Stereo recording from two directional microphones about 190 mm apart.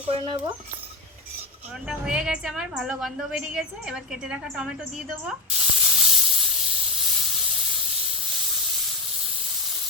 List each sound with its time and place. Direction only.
0.1 s speech: 25° right (ahead or behind)
1.9 s a woman's voice: 5° right (ahead or behind)